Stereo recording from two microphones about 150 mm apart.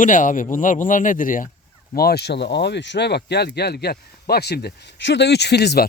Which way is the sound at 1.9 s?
90° left.